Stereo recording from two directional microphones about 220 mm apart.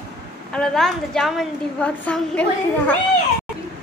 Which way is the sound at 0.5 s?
5° left (ahead or behind).